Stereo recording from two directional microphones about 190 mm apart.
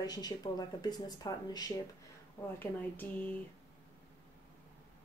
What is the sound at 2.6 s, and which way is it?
Speech, 10° left (ahead or behind).